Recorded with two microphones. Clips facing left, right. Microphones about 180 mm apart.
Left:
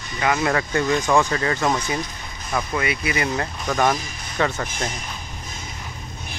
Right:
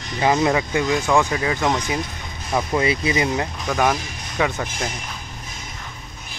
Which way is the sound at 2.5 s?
25° right (ahead or behind).